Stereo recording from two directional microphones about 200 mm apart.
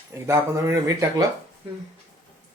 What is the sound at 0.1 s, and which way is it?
Speech, 15° right (ahead or behind).